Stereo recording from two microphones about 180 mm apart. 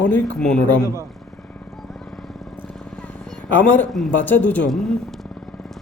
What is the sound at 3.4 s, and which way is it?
A man's voice, 10° left (ahead or behind).